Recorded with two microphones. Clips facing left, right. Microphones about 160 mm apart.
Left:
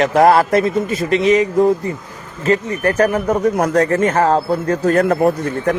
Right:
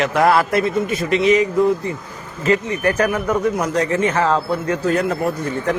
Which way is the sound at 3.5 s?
50° left (ahead or behind).